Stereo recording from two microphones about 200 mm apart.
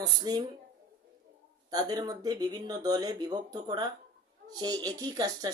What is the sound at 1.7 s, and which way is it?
A man's voice, 20° right (ahead or behind).